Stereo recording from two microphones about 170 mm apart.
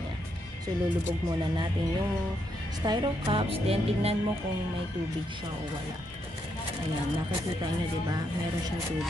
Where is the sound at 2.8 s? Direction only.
30° right (ahead or behind).